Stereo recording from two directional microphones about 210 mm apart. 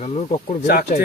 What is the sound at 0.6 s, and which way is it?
Speech, 45° left (ahead or behind).